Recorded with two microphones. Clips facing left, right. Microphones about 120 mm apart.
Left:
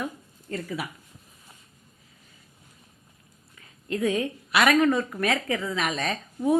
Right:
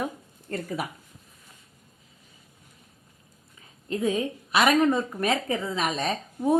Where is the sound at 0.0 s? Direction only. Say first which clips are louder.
Right 2 dB; 50° right (ahead or behind).